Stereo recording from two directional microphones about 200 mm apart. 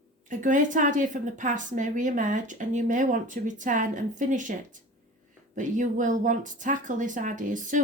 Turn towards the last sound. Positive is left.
turn(degrees=-40)  # may be behind; listen again after turning